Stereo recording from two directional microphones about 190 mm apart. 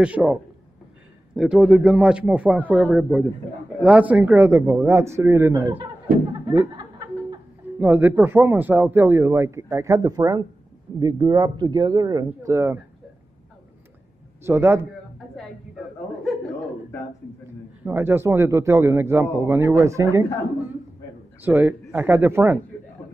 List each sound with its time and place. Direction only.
0.0 s a man's voice: 5° right (ahead or behind)
7.8 s a man's voice: 10° right (ahead or behind)
14.4 s a man's voice: 10° right (ahead or behind)
17.8 s a man's voice: 10° right (ahead or behind)
21.4 s a man's voice: 10° right (ahead or behind)